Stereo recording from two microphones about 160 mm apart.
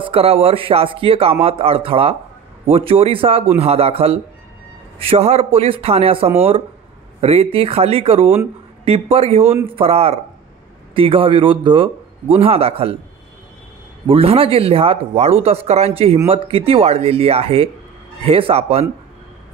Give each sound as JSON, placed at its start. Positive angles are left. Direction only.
{"t": 0.0, "sound": "speech", "side_deg": -35}
{"t": 14.0, "sound": "speech", "side_deg": -35}